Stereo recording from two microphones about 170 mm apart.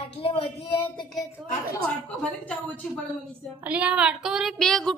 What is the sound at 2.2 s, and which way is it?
Speech, 5° left (ahead or behind).